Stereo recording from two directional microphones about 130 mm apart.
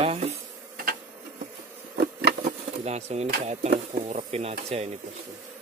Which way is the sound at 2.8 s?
55° right (ahead or behind).